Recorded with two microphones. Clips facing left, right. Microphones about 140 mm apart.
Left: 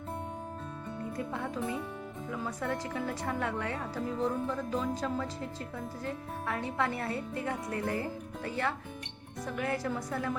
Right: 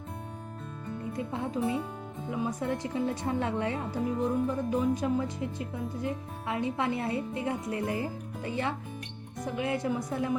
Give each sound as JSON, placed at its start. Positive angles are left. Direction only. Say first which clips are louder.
{"t": 1.1, "sound": "speech", "louder": "right 4 dB", "side_deg": -20}